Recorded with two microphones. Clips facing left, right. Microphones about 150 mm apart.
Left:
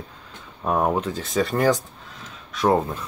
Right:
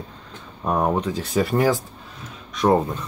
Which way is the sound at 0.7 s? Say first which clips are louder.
Even; centre (ahead or behind).